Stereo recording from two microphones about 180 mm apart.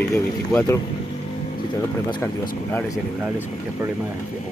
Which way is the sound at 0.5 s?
15° left (ahead or behind).